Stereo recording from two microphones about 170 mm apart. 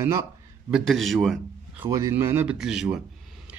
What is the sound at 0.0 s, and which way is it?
Speech, 15° right (ahead or behind).